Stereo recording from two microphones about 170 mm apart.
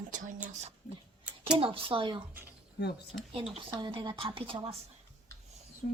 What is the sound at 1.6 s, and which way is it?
Speech, 30° right (ahead or behind).